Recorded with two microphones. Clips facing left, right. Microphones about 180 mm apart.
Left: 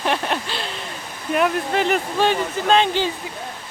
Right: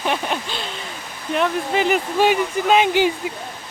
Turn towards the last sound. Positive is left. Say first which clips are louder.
# right 2 dB
turn(degrees=-10)  # may be behind; listen again after turning